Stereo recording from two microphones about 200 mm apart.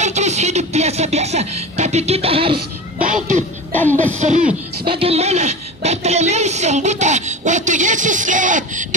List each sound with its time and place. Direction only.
0.0 s music: 35° right (ahead or behind)
3.3 s music: 10° left (ahead or behind)
4.2 s a woman's voice: 35° right (ahead or behind)